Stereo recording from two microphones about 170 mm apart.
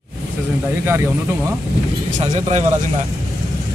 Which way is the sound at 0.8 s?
15° right (ahead or behind).